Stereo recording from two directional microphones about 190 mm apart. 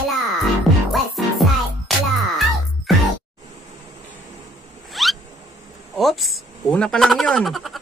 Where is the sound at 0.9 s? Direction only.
Centre (ahead or behind).